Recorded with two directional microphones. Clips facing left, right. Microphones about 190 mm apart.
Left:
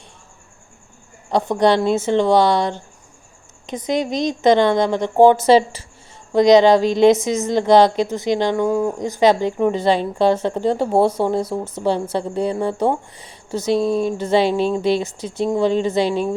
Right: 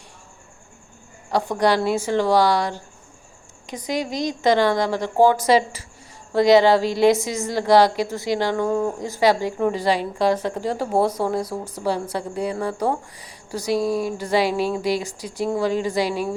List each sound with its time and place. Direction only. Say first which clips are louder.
1.3 s a woman's voice: left 4 dB; 20° left (ahead or behind)